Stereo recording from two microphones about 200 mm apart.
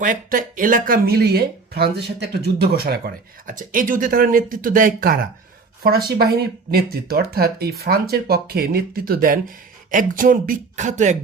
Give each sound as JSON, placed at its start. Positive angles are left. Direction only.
{"t": 0.0, "sound": "speech", "side_deg": -40}